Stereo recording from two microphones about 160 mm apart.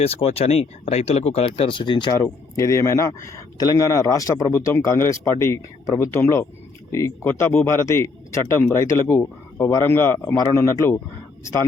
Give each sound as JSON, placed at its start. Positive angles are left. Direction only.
{"t": 0.0, "sound": "a man's voice", "side_deg": 40}